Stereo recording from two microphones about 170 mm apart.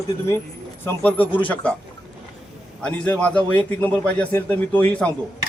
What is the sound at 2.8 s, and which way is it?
A man's voice, 5° left (ahead or behind).